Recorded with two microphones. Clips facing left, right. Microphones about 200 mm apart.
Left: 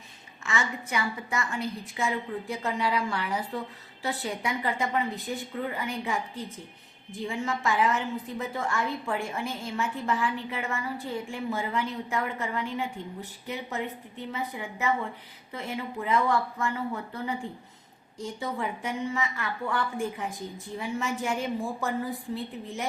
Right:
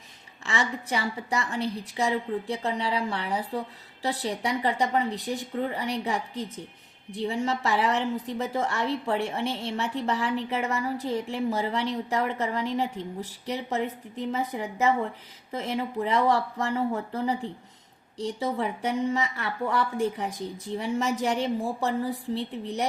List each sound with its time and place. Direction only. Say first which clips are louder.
0.4 s a woman's voice: right 2 dB; 35° right (ahead or behind)